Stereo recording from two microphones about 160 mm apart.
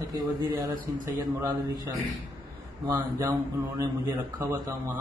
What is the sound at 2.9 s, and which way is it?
A man's voice, 20° right (ahead or behind).